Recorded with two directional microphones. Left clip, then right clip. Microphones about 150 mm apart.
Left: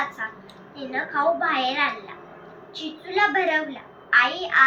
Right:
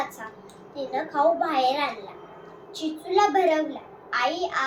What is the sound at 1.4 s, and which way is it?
A child's voice, 50° right (ahead or behind).